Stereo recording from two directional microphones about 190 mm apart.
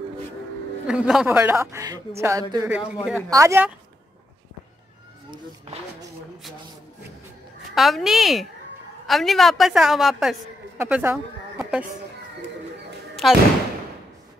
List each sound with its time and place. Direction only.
0.8 s speech: 5° right (ahead or behind)
5.7 s speech: 35° right (ahead or behind)
7.7 s a woman's voice: centre (ahead or behind)
13.1 s a sound: centre (ahead or behind)